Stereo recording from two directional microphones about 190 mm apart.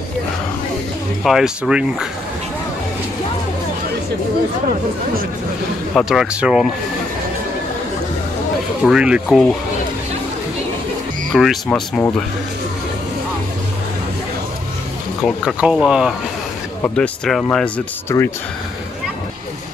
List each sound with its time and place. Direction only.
1.2 s speech: 5° right (ahead or behind)
5.9 s speech: centre (ahead or behind)
8.8 s speech: 5° right (ahead or behind)
11.3 s speech: centre (ahead or behind)
15.2 s speech: 5° right (ahead or behind)
18.1 s speech: 15° left (ahead or behind)